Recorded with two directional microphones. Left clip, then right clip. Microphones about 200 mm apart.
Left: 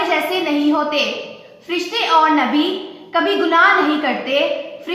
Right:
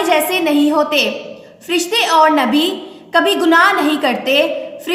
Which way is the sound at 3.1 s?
55° right (ahead or behind).